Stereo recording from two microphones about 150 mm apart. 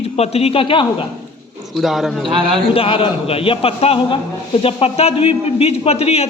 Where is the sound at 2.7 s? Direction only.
35° left (ahead or behind).